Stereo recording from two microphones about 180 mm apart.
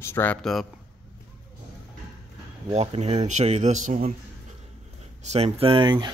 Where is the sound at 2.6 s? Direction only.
35° right (ahead or behind).